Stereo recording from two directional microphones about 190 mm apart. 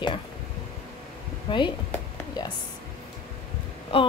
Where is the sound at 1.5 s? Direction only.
25° left (ahead or behind).